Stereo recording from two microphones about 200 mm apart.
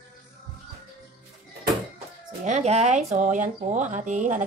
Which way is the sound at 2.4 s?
35° right (ahead or behind).